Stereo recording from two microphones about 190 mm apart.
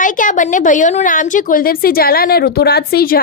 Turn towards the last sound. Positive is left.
turn(degrees=55)  # may be behind; listen again after turning